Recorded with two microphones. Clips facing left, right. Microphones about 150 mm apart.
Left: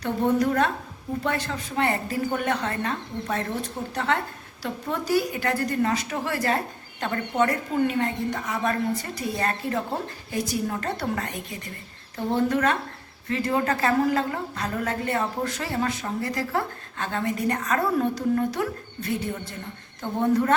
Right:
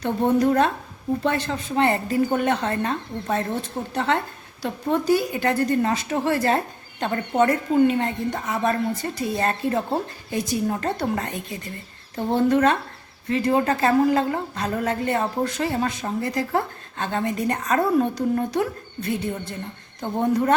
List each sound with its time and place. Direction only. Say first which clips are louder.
0.0 s a woman's voice: right 3 dB; 25° right (ahead or behind)
20.0 s a woman's voice: right 1 dB; 20° right (ahead or behind)